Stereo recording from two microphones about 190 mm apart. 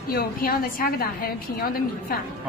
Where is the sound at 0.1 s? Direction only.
50° left (ahead or behind).